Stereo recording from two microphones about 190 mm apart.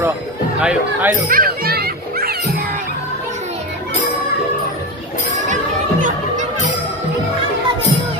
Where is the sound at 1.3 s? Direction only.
50° right (ahead or behind).